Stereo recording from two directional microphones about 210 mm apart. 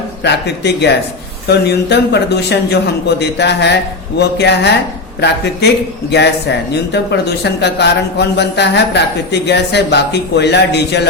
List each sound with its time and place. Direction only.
0.2 s speech: 55° left (ahead or behind)